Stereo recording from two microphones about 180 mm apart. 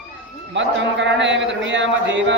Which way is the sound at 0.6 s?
85° right.